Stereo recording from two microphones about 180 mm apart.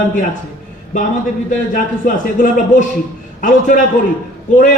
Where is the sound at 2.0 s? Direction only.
45° left (ahead or behind).